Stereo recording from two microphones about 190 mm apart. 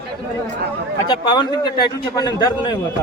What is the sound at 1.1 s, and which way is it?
A man's voice, 25° left (ahead or behind).